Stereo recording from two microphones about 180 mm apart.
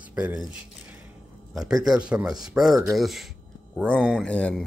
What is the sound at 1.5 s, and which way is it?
Speech, 5° right (ahead or behind).